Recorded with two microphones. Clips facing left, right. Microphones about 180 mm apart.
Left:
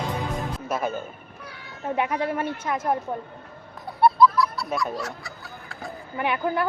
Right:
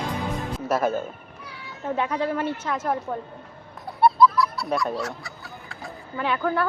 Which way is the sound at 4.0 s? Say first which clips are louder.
Even; centre (ahead or behind).